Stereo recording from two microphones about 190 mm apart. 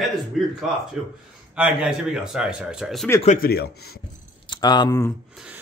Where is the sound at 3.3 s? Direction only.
55° left (ahead or behind).